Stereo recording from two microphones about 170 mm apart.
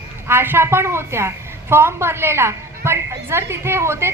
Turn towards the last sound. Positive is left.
turn(degrees=-15)  # may be behind; listen again after turning